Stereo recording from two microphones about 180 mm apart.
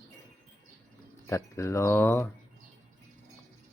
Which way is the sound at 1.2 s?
15° left (ahead or behind).